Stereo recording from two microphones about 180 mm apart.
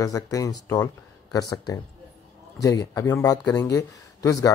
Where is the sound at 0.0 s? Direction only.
20° left (ahead or behind).